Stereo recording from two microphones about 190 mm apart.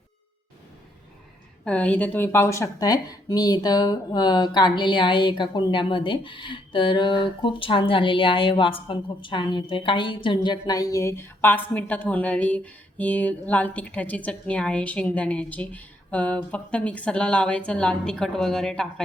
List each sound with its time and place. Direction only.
1.6 s a woman's voice: 10° left (ahead or behind)